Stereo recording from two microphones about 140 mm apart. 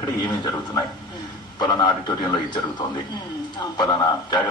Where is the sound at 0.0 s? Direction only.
30° left (ahead or behind).